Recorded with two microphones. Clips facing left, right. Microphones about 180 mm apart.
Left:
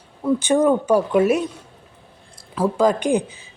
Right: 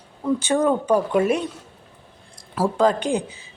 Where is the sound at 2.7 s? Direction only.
15° left (ahead or behind).